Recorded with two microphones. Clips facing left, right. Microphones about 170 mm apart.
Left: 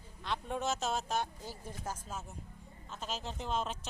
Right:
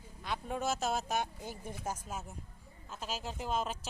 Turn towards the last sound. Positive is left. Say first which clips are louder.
# right 1 dB
turn(degrees=-5)  # may be behind; listen again after turning